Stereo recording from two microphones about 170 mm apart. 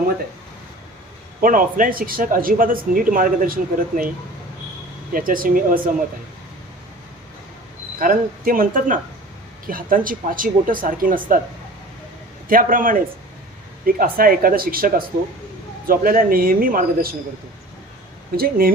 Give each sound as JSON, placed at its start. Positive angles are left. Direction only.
{"t": 1.4, "sound": "speech", "side_deg": -55}
{"t": 5.1, "sound": "speech", "side_deg": -55}
{"t": 7.9, "sound": "speech", "side_deg": -55}
{"t": 12.5, "sound": "speech", "side_deg": -55}
{"t": 18.3, "sound": "speech", "side_deg": -60}